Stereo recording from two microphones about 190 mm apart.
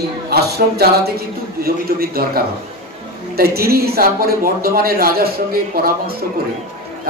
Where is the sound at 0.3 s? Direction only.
55° right (ahead or behind).